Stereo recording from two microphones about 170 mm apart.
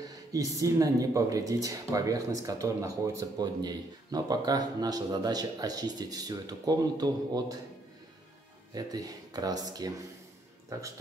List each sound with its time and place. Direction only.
0.3 s speech: 20° right (ahead or behind)
8.7 s speech: 20° right (ahead or behind)